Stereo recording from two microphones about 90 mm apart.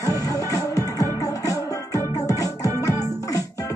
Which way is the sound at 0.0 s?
40° left (ahead or behind).